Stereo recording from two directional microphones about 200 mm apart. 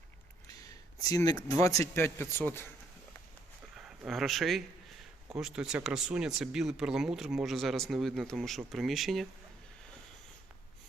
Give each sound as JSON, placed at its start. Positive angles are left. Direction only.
{"t": 1.0, "sound": "a man's voice", "side_deg": 15}
{"t": 3.8, "sound": "speech", "side_deg": -5}